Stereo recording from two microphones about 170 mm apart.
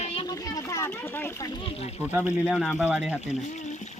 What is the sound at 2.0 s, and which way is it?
Speech, 10° right (ahead or behind).